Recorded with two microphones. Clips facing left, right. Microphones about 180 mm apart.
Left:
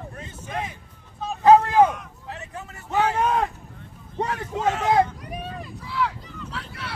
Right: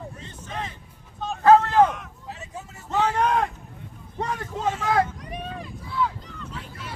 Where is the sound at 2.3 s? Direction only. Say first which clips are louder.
Left 2 dB; 65° left (ahead or behind).